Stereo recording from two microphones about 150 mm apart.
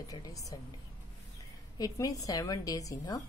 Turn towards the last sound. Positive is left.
turn(degrees=25)  # may be behind; listen again after turning